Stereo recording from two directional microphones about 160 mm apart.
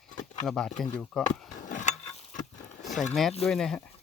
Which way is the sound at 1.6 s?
50° left (ahead or behind).